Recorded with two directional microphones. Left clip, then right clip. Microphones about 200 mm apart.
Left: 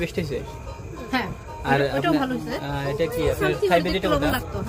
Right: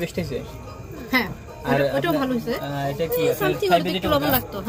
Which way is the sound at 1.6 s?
10° left (ahead or behind).